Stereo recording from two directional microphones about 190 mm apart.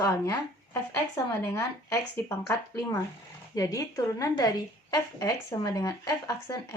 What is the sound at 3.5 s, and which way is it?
A woman's voice, 20° left (ahead or behind).